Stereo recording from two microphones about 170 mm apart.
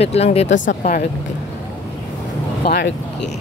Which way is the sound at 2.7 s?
75° left (ahead or behind).